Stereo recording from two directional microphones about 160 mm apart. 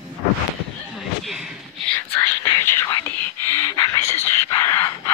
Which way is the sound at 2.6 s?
15° left (ahead or behind).